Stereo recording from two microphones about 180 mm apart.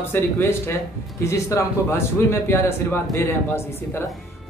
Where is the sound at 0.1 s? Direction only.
15° left (ahead or behind).